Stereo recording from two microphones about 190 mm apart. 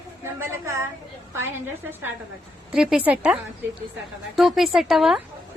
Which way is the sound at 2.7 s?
5° right (ahead or behind).